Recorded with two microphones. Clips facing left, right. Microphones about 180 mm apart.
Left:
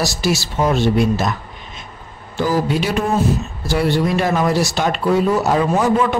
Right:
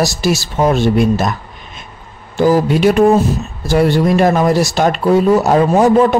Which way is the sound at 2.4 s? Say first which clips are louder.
Right 7 dB; 50° right (ahead or behind).